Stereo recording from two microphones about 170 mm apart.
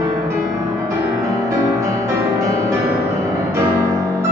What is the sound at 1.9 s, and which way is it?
Music, 20° right (ahead or behind).